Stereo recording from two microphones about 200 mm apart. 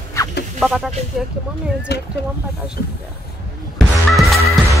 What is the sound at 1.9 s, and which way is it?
Speech, 55° left (ahead or behind).